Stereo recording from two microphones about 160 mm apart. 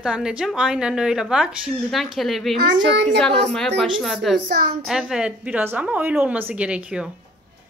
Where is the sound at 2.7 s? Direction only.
90° right.